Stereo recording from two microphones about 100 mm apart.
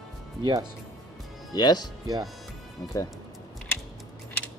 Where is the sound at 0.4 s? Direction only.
45° right (ahead or behind).